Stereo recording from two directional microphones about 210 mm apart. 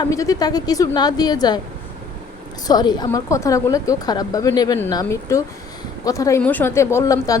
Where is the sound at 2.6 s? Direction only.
20° left (ahead or behind).